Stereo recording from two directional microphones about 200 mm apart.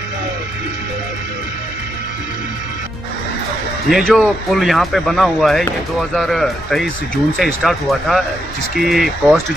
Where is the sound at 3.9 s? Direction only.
Centre (ahead or behind).